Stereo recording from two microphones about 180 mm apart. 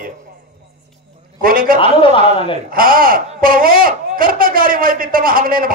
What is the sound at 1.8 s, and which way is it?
Speech, 30° left (ahead or behind).